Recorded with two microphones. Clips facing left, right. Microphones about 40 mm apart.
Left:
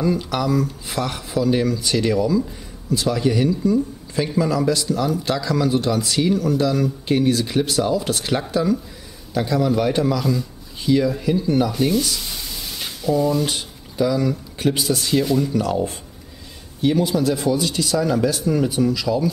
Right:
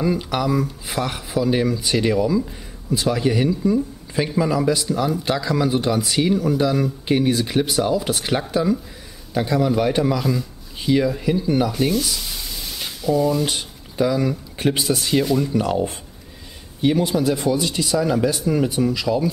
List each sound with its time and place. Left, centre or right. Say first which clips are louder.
0.0 s speech: even; centre
15.2 s speech: even; centre
15.5 s speech: even; centre